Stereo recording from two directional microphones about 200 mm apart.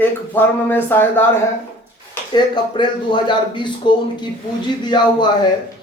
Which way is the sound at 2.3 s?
20° left (ahead or behind).